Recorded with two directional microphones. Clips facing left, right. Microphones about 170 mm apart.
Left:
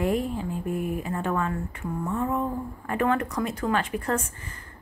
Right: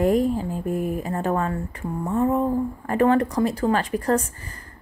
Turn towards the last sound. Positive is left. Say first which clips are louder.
# right 6 dB
turn(degrees=-35)  # may be behind; listen again after turning